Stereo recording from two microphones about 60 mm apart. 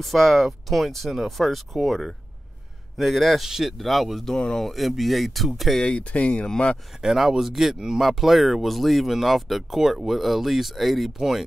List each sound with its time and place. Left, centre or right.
0.0 s speech: centre
5.8 s speech: centre
7.0 s speech: centre